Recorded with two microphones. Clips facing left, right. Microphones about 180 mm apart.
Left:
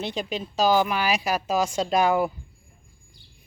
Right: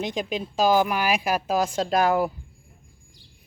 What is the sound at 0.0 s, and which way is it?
Speech, 10° right (ahead or behind).